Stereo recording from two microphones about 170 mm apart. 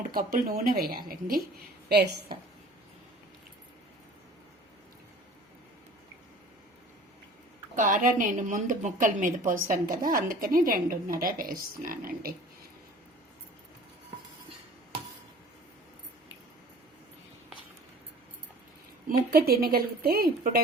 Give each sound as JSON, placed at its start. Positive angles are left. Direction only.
{"t": 0.1, "sound": "a woman's voice", "side_deg": -55}
{"t": 1.9, "sound": "a woman's voice", "side_deg": -75}
{"t": 7.8, "sound": "a woman's voice", "side_deg": -50}
{"t": 19.0, "sound": "a woman's voice", "side_deg": -60}